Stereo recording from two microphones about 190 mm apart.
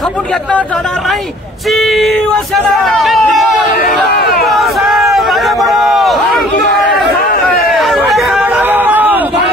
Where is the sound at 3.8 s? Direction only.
55° left (ahead or behind).